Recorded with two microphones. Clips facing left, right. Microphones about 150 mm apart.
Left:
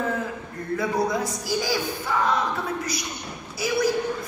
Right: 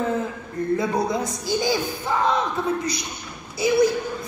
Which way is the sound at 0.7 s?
20° right (ahead or behind).